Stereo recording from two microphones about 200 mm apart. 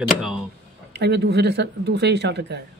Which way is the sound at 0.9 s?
60° right (ahead or behind).